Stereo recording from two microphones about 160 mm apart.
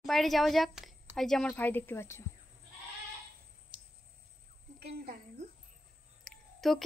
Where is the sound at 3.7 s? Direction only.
30° right (ahead or behind).